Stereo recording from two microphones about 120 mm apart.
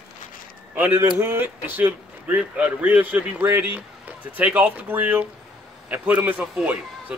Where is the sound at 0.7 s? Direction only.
15° right (ahead or behind).